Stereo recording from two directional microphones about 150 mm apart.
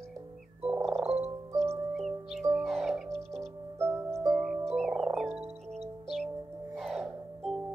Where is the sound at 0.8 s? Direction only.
45° right (ahead or behind).